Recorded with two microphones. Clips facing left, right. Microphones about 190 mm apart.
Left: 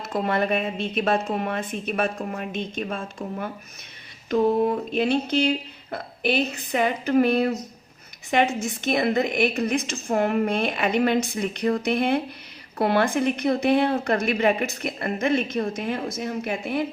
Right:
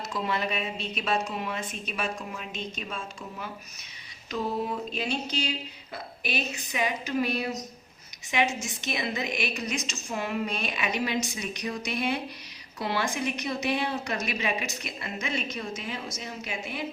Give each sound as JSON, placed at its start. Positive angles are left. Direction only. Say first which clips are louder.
{"t": 0.1, "sound": "a woman's voice", "louder": "left 8 dB", "side_deg": 55}